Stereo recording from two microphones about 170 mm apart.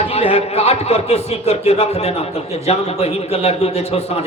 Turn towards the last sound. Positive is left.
turn(degrees=40)  # may be behind; listen again after turning